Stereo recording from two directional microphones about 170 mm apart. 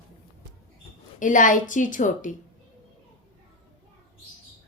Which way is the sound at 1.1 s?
50° left (ahead or behind).